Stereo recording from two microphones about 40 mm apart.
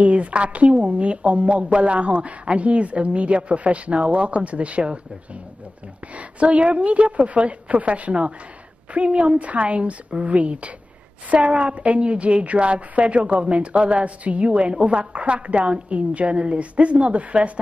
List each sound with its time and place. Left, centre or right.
0.0 s a woman's voice: right
6.1 s a woman's voice: right